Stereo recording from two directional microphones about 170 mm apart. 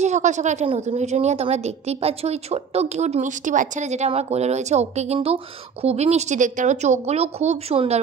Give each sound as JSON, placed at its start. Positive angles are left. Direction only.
{"t": 0.0, "sound": "a woman's voice", "side_deg": -45}